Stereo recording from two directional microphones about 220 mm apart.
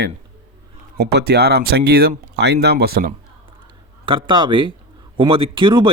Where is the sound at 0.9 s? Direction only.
50° right (ahead or behind).